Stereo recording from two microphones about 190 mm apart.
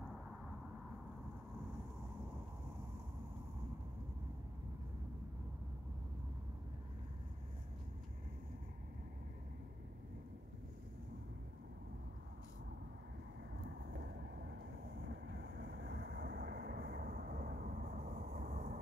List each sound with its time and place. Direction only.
13.7 s vehicle: 75° right (ahead or behind); by 18.8 s 50° right (ahead or behind)